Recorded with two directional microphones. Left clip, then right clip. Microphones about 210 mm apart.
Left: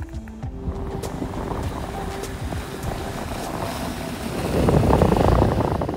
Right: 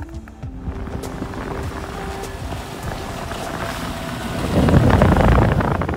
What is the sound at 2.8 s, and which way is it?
Boat, centre (ahead or behind).